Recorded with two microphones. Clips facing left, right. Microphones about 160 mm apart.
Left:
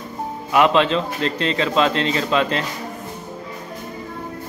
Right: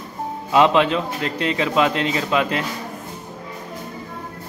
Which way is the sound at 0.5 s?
15° right (ahead or behind).